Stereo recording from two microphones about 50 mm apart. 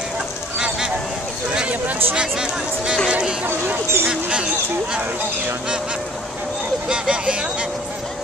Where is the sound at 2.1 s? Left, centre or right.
Centre.